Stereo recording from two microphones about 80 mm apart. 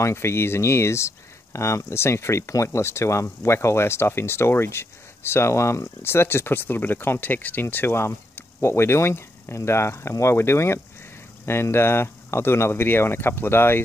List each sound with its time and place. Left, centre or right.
0.0 s speech: left